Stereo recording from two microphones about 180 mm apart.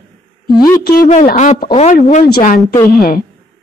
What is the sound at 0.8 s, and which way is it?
Speech, 55° left (ahead or behind).